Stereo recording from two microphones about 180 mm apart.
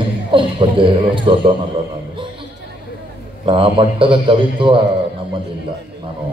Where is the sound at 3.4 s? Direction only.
30° right (ahead or behind).